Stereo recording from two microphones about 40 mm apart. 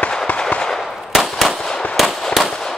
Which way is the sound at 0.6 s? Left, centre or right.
Centre.